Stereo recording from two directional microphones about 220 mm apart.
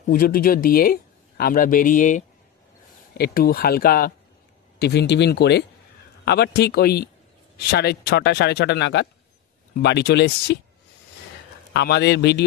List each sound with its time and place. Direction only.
0.1 s speech: 40° left (ahead or behind)
11.7 s speech: 50° left (ahead or behind)